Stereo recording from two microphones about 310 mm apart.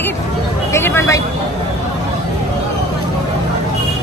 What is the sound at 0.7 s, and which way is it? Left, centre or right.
Speech, centre.